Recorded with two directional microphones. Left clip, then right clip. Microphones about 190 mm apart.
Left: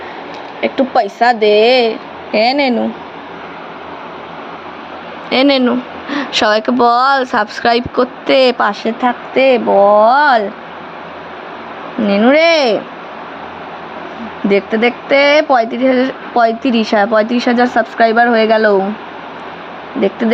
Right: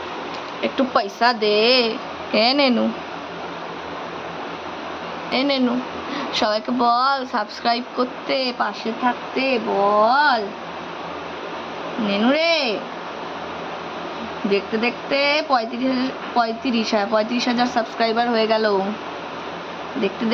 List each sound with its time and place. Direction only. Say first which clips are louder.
0.6 s speech: left 7 dB; 25° left (ahead or behind)
5.3 s speech: left 9 dB; 45° left (ahead or behind)
12.0 s speech: left 9 dB; 45° left (ahead or behind)
14.5 s speech: left 9 dB; 45° left (ahead or behind)